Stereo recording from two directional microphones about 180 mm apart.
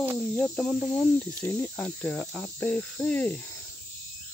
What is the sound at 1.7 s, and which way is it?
Cricket, 5° left (ahead or behind).